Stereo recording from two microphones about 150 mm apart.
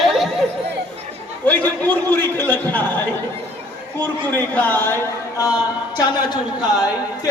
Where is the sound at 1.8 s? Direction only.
10° left (ahead or behind).